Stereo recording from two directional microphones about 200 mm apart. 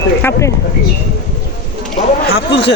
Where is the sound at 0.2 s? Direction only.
15° left (ahead or behind).